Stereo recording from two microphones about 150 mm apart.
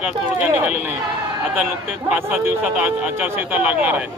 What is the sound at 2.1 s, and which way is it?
Speech, 10° right (ahead or behind).